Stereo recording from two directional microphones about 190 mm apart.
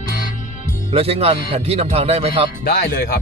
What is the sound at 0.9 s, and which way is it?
Speech, 30° right (ahead or behind).